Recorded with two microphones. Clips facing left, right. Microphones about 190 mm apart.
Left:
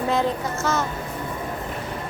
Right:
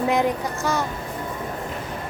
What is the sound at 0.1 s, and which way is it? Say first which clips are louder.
Speech: right 1 dB; 15° right (ahead or behind).